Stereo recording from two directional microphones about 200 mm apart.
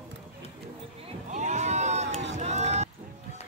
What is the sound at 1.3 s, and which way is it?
Run, 35° right (ahead or behind).